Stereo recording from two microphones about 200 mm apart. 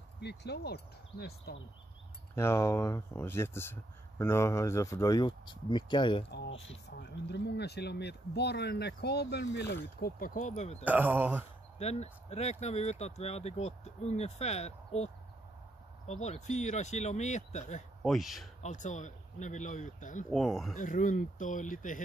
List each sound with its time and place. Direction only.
0.2 s speech: 55° left (ahead or behind)
2.3 s speech: 15° left (ahead or behind)
7.0 s speech: 55° left (ahead or behind)
9.9 s speech: 45° left (ahead or behind)
10.9 s speech: 10° right (ahead or behind)
11.8 s speech: 30° left (ahead or behind)
16.1 s speech: 35° left (ahead or behind)
18.0 s speech: centre (ahead or behind)
18.6 s speech: 35° left (ahead or behind)
20.2 s speech: centre (ahead or behind)
20.7 s speech: 40° left (ahead or behind)